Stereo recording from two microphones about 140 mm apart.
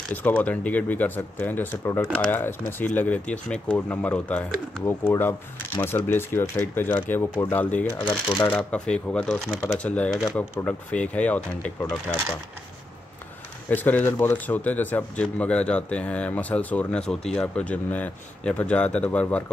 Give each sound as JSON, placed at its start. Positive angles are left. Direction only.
{"t": 0.1, "sound": "speech", "side_deg": 10}
{"t": 13.7, "sound": "speech", "side_deg": 10}